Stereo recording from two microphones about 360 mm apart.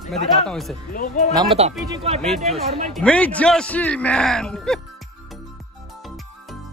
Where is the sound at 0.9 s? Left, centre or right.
Left.